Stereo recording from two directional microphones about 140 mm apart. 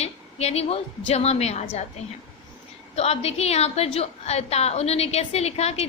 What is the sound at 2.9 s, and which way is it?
A woman's voice, 45° left (ahead or behind).